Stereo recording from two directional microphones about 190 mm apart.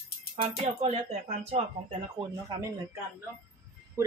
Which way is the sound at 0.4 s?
30° right (ahead or behind).